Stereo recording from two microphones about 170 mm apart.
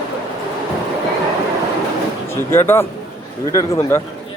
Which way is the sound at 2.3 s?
15° left (ahead or behind).